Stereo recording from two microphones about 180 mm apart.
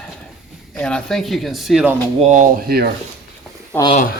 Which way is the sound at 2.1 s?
40° right (ahead or behind).